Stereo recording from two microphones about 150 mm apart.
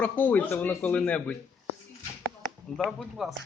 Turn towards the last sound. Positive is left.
turn(degrees=0)  # may be behind; listen again after turning